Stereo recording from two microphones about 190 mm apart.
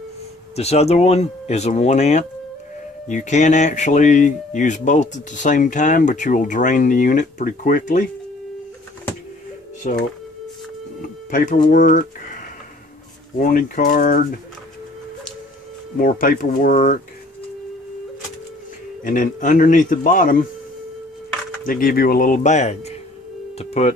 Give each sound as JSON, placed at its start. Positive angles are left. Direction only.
{"t": 0.6, "sound": "speech", "side_deg": 35}
{"t": 9.8, "sound": "a man's voice", "side_deg": 45}
{"t": 16.0, "sound": "a man's voice", "side_deg": 45}
{"t": 19.0, "sound": "a man's voice", "side_deg": 45}
{"t": 21.6, "sound": "a man's voice", "side_deg": 45}